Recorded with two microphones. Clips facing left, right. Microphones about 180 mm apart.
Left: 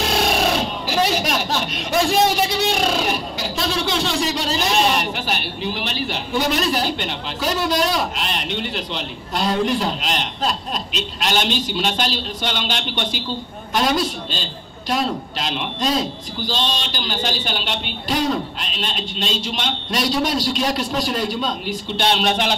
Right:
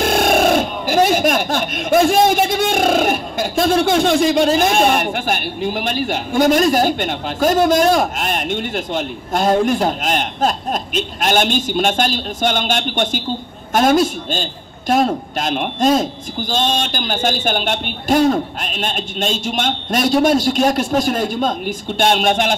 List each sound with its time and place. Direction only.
0.0 s speech: 50° right (ahead or behind)